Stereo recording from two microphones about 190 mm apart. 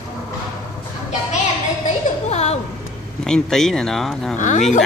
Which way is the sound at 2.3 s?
35° left (ahead or behind).